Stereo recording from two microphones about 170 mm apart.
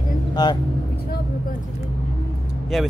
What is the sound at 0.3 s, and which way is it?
Speech, 25° left (ahead or behind).